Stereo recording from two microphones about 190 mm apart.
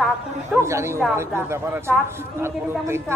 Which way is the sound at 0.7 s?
15° right (ahead or behind).